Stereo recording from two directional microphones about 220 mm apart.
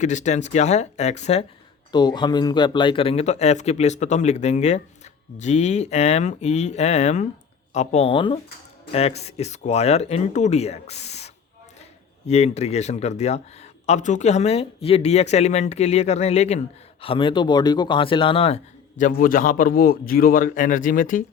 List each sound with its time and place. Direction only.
0.0 s a man's voice: 35° left (ahead or behind)
1.9 s a man's voice: 20° left (ahead or behind)
12.3 s a man's voice: 30° left (ahead or behind)